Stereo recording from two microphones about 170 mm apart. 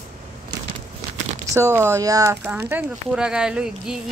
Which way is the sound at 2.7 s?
5° right (ahead or behind).